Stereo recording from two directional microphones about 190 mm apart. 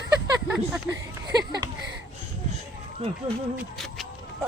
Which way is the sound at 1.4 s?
20° right (ahead or behind).